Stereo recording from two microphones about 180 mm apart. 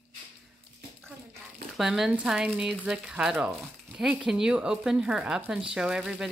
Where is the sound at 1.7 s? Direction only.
Centre (ahead or behind).